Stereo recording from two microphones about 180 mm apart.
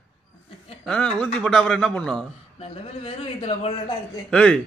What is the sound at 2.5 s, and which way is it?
A man's voice, 30° left (ahead or behind).